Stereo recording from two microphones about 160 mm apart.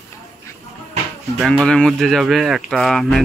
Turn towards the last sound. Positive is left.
turn(degrees=0)  # may be behind; listen again after turning